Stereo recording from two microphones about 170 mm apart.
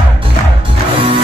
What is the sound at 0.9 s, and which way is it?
Music, 30° right (ahead or behind).